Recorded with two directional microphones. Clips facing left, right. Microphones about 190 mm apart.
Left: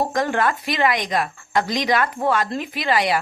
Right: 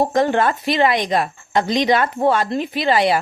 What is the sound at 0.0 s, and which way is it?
Speech, 30° right (ahead or behind).